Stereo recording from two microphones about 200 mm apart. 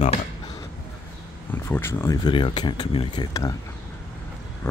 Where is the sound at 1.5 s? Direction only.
10° left (ahead or behind).